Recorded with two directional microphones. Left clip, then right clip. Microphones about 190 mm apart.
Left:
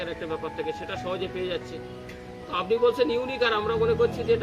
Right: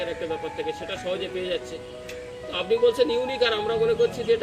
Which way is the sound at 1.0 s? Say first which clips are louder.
Right 2 dB; 15° left (ahead or behind).